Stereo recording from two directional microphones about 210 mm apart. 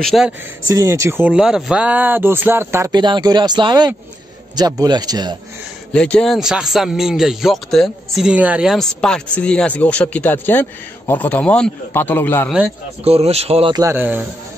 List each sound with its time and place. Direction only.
0.0 s speech: centre (ahead or behind)
0.7 s speech: 15° right (ahead or behind)
5.9 s speech: 5° left (ahead or behind)
13.0 s speech: 30° right (ahead or behind); by 14.2 s 10° right (ahead or behind)